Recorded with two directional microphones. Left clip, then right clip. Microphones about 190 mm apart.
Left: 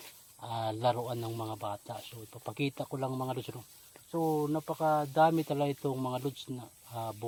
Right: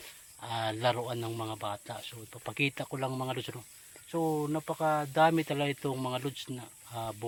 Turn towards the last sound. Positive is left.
turn(degrees=0)  # may be behind; listen again after turning